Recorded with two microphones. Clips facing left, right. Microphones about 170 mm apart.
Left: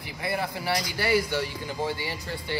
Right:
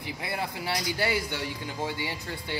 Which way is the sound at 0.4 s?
20° right (ahead or behind).